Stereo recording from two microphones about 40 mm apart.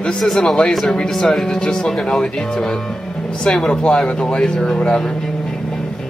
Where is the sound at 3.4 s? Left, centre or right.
Centre.